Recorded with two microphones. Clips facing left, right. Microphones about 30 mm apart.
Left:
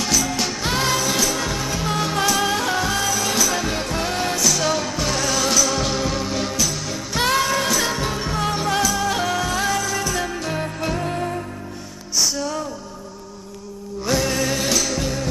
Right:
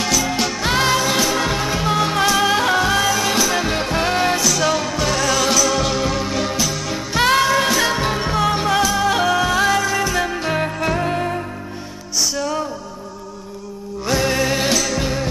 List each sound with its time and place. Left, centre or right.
0.4 s music: centre
0.7 s music: right
4.5 s music: centre
6.5 s music: centre
12.2 s music: centre
14.2 s music: right